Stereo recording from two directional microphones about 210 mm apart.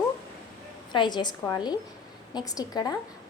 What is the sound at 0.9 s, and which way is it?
A woman's voice, 20° left (ahead or behind).